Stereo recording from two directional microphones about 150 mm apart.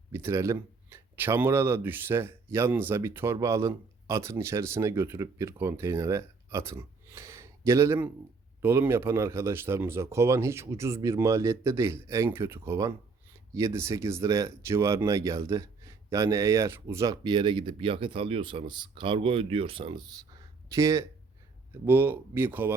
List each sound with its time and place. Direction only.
0.1 s speech: 15° right (ahead or behind); by 20.1 s 35° right (ahead or behind)
20.7 s speech: 20° right (ahead or behind)